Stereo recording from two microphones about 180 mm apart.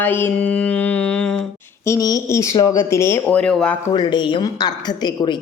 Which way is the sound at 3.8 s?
25° left (ahead or behind).